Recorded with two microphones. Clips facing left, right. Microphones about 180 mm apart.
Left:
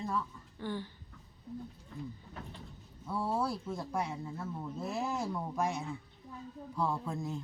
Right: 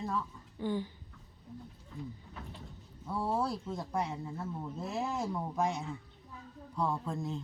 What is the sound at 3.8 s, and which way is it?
Speech, centre (ahead or behind).